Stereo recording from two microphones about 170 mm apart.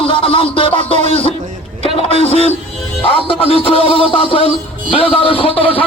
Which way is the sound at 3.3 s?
35° left (ahead or behind).